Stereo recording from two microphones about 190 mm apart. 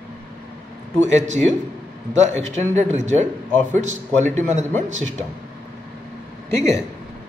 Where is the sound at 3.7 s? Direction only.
40° right (ahead or behind).